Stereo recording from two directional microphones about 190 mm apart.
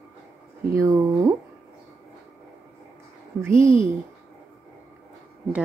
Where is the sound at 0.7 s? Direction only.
20° right (ahead or behind).